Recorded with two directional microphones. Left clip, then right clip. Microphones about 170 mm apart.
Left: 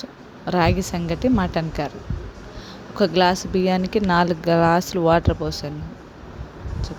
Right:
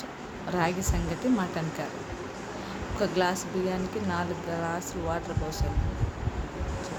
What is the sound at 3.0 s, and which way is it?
Speech, 55° left (ahead or behind).